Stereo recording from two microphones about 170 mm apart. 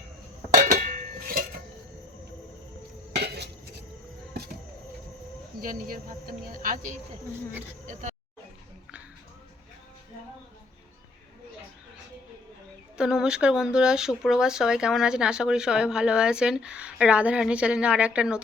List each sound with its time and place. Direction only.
0.5 s a sound: 50° right (ahead or behind)
3.1 s dishes: 75° right (ahead or behind)
5.5 s speech: 55° right (ahead or behind)
13.0 s speech: 5° right (ahead or behind)